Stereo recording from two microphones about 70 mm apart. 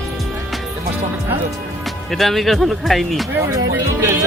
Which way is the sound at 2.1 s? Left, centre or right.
Centre.